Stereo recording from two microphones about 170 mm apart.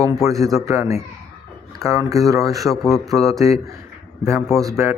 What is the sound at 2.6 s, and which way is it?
Speech, centre (ahead or behind).